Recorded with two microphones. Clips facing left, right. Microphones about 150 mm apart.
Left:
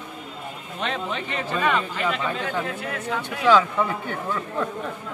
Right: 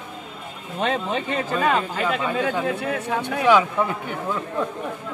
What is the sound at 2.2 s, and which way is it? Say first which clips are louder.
Speech: right 4 dB; 15° right (ahead or behind).